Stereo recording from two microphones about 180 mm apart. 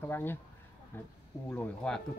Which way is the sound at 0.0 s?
10° left (ahead or behind).